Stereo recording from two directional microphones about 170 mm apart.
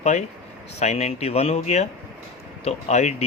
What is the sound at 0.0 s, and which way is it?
Speech, 45° left (ahead or behind).